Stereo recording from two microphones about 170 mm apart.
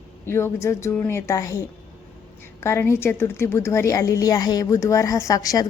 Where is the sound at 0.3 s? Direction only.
15° left (ahead or behind).